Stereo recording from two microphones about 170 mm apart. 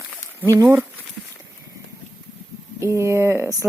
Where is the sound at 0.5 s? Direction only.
15° right (ahead or behind).